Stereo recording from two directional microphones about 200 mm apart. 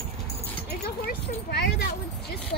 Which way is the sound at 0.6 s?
50° left (ahead or behind).